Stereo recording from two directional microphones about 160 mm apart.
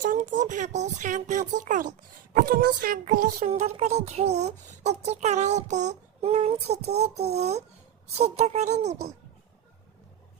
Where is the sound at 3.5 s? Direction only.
40° right (ahead or behind).